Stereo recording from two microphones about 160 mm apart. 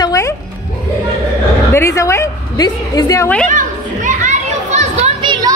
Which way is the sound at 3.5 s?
50° right (ahead or behind).